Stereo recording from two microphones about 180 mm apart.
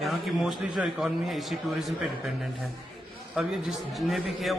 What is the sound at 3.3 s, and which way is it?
A man's voice, centre (ahead or behind).